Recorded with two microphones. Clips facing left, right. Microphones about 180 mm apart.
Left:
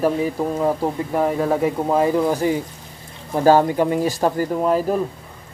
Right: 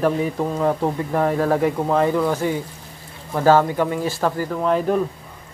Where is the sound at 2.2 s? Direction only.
15° left (ahead or behind).